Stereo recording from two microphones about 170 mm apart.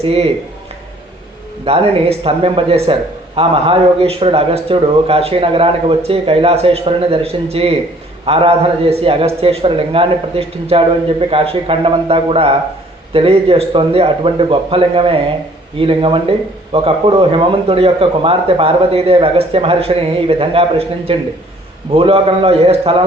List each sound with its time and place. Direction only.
0.0 s speech: 35° right (ahead or behind)
1.6 s speech: 35° right (ahead or behind)